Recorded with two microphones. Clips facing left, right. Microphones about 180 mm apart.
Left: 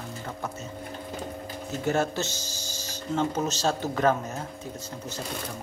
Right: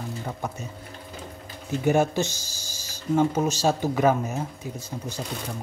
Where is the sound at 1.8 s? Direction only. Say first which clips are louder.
Right 5 dB; 15° right (ahead or behind).